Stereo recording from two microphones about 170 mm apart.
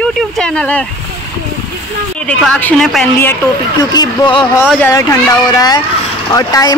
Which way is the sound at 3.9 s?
30° left (ahead or behind).